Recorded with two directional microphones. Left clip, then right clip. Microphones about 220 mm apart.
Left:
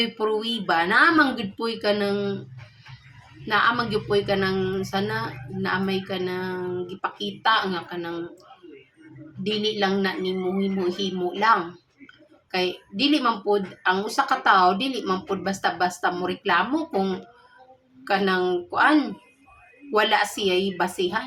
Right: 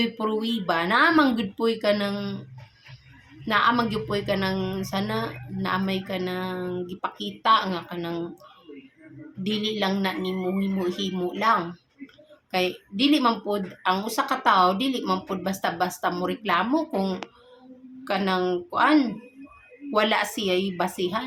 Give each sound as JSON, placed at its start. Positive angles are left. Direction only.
{"t": 0.0, "sound": "speech", "side_deg": -15}
{"t": 3.4, "sound": "speech", "side_deg": -15}
{"t": 9.4, "sound": "speech", "side_deg": -15}
{"t": 18.0, "sound": "speech", "side_deg": -10}